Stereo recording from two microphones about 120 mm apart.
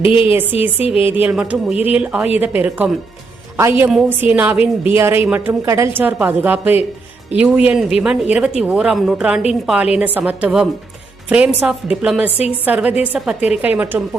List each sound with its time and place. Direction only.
0.8 s speech: 50° left (ahead or behind)
1.1 s a woman's voice: 10° right (ahead or behind)
5.6 s a woman's voice: 25° right (ahead or behind)